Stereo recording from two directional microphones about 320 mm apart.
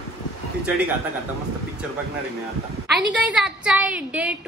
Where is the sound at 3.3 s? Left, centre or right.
Centre.